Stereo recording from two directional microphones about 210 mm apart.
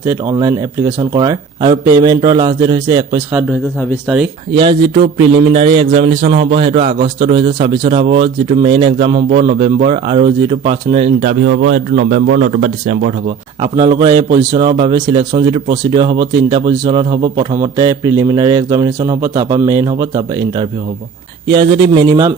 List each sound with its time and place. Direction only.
0.0 s speech: 15° right (ahead or behind)
4.5 s a man's voice: 25° right (ahead or behind)
9.3 s a man's voice: 45° right (ahead or behind)
9.6 s a man's voice: 30° right (ahead or behind)
13.6 s a man's voice: 25° right (ahead or behind)